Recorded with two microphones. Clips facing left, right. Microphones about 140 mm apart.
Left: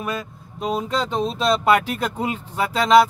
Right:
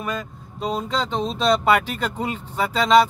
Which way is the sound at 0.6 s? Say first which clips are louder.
Left 1 dB; 5° left (ahead or behind).